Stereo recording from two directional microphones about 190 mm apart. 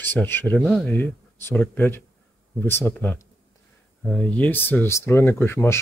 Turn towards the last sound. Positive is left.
turn(degrees=10)  # may be behind; listen again after turning